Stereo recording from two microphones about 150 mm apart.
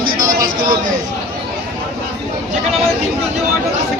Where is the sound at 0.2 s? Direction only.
25° right (ahead or behind).